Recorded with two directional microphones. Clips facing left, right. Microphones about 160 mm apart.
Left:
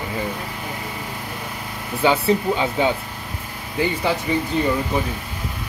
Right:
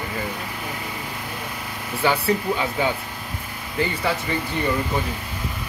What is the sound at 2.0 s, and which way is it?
Speech, 20° left (ahead or behind).